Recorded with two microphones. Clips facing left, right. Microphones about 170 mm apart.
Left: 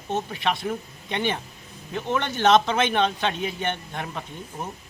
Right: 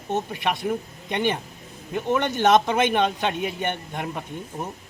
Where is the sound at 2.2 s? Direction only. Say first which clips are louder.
Even; 15° right (ahead or behind).